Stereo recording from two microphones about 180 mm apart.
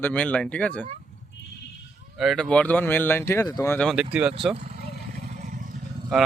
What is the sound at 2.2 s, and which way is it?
Speech, centre (ahead or behind).